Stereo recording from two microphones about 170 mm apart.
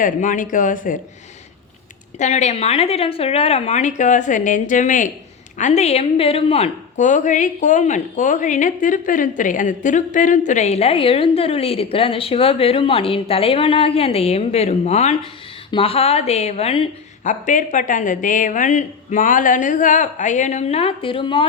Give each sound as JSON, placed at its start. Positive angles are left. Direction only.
{"t": 0.0, "sound": "speech", "side_deg": 50}
{"t": 2.1, "sound": "a woman's voice", "side_deg": 45}
{"t": 17.2, "sound": "speech", "side_deg": 50}